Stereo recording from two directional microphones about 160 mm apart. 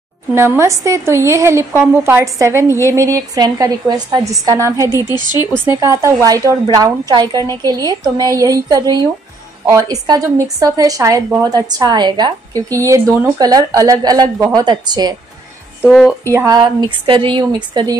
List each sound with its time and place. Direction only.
0.3 s a woman's voice: 15° right (ahead or behind)
4.9 s a woman's voice: 25° left (ahead or behind)
5.7 s a woman's voice: 20° right (ahead or behind)
16.3 s a woman's voice: 25° right (ahead or behind)